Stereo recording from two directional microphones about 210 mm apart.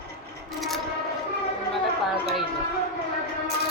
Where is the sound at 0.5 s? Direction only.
Centre (ahead or behind).